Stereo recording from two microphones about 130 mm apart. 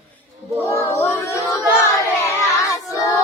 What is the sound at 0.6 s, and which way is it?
Child singing, 20° left (ahead or behind).